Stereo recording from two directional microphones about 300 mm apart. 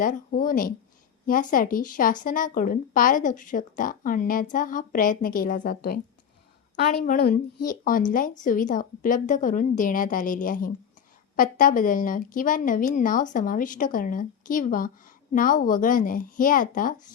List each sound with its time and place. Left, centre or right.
0.0 s a woman's voice: left